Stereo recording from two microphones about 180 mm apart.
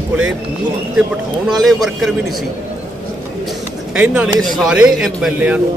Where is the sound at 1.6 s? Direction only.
Centre (ahead or behind).